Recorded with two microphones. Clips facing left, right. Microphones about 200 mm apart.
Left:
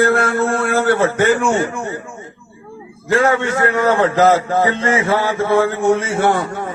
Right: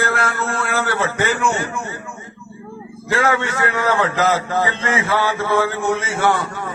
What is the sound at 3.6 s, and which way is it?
Speech, 45° left (ahead or behind).